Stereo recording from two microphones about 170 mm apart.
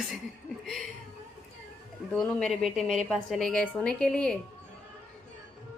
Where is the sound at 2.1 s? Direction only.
5° left (ahead or behind).